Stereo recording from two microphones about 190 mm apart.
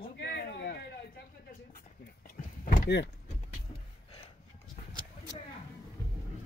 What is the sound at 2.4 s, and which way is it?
Door, 40° left (ahead or behind).